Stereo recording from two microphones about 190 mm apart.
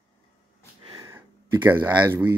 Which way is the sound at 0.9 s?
15° right (ahead or behind).